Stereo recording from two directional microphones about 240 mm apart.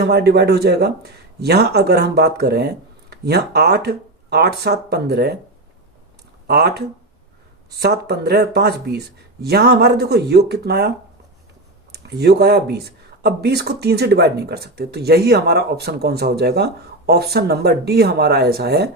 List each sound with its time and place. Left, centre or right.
0.0 s speech: right
6.5 s speech: right